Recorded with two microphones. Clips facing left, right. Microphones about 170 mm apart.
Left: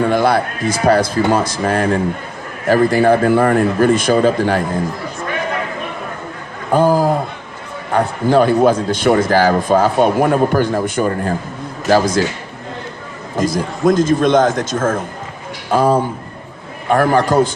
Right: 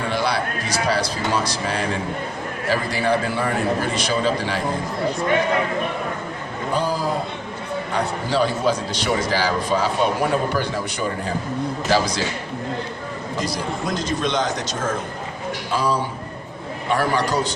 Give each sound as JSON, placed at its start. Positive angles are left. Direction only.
{"t": 0.0, "sound": "speech", "side_deg": 50}
{"t": 6.7, "sound": "speech", "side_deg": 50}
{"t": 13.3, "sound": "speech", "side_deg": 50}